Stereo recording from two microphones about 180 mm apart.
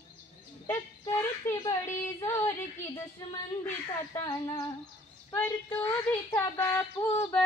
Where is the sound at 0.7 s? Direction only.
15° left (ahead or behind).